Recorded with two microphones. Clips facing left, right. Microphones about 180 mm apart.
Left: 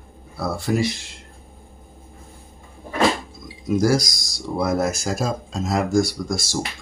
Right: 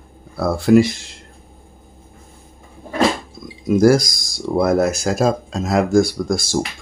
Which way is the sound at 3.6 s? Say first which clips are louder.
Right 6 dB; 55° right (ahead or behind).